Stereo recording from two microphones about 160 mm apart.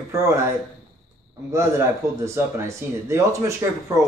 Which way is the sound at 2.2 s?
15° right (ahead or behind).